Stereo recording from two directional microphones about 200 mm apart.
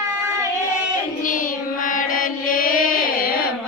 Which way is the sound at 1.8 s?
45° left (ahead or behind).